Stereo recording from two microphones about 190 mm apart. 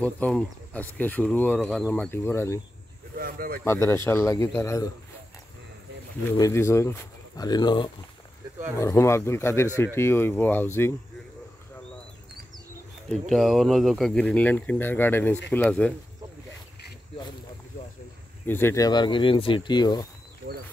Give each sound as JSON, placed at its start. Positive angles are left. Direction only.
{"t": 0.0, "sound": "speech", "side_deg": 5}
{"t": 3.2, "sound": "speech", "side_deg": -50}
{"t": 3.6, "sound": "speech", "side_deg": 15}
{"t": 6.3, "sound": "speech", "side_deg": 15}
{"t": 13.1, "sound": "speech", "side_deg": 0}
{"t": 18.5, "sound": "speech", "side_deg": 10}